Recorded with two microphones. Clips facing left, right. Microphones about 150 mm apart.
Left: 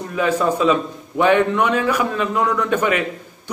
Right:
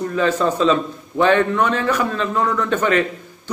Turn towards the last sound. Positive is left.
turn(degrees=10)  # may be behind; listen again after turning